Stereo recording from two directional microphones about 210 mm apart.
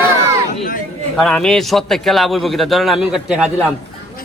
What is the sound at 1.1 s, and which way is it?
Speech, 5° left (ahead or behind).